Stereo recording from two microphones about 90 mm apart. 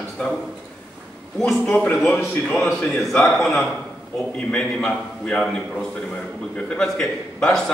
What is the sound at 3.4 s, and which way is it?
A man's voice, 5° left (ahead or behind).